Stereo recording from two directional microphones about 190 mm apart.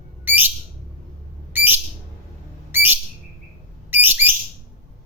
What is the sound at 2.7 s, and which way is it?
Whistle, 10° right (ahead or behind).